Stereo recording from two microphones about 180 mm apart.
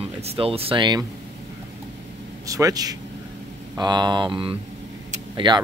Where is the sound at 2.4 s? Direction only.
20° right (ahead or behind).